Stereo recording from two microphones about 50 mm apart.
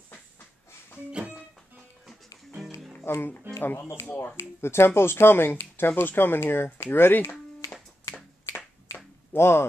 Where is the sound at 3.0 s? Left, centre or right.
Left.